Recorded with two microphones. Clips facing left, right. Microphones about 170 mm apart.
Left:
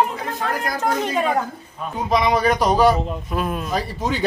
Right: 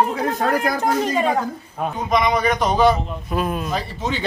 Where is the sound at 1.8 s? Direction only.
65° right (ahead or behind).